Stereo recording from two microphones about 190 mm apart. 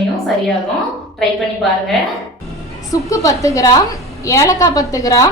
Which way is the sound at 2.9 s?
15° left (ahead or behind).